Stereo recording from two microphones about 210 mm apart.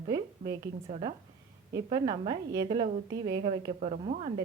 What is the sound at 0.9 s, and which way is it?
A woman's voice, 30° right (ahead or behind).